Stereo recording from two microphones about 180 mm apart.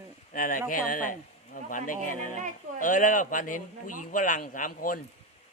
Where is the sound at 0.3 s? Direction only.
50° left (ahead or behind).